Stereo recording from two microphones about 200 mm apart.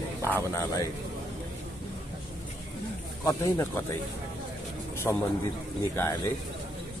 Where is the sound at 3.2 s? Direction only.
15° left (ahead or behind).